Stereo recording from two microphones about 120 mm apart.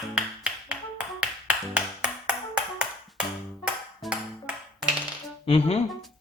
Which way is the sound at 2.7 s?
5° right (ahead or behind).